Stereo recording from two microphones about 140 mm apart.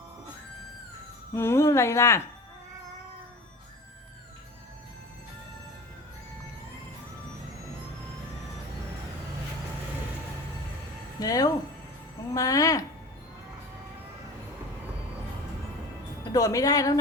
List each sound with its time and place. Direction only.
1.3 s a woman's voice: 20° left (ahead or behind)
11.2 s a woman's voice: 25° left (ahead or behind)
16.3 s a woman's voice: 25° left (ahead or behind)